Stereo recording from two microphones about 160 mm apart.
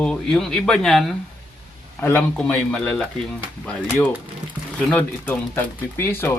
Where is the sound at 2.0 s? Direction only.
15° left (ahead or behind).